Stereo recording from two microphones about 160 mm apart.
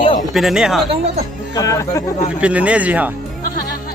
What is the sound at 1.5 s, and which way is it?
Speech, 20° left (ahead or behind).